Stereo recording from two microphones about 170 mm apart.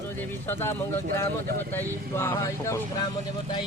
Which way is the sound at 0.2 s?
15° left (ahead or behind).